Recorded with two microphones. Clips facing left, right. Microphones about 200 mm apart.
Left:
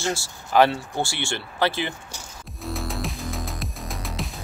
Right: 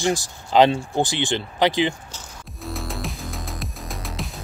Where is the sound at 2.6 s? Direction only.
Centre (ahead or behind).